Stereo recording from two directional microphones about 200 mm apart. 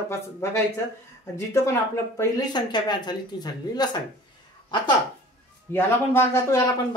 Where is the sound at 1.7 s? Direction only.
15° left (ahead or behind).